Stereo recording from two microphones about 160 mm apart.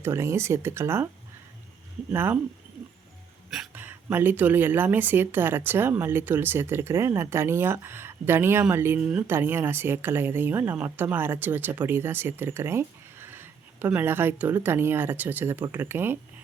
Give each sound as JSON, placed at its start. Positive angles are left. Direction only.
{"t": 0.0, "sound": "speech", "side_deg": -15}
{"t": 2.1, "sound": "speech", "side_deg": -15}
{"t": 3.8, "sound": "speech", "side_deg": -10}